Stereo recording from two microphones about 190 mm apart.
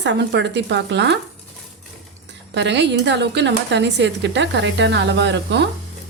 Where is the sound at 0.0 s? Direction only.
70° right (ahead or behind).